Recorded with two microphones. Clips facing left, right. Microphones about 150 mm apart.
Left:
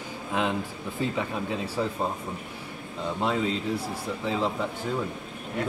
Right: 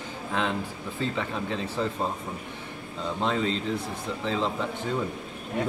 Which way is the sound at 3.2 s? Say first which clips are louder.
Even; 5° left (ahead or behind).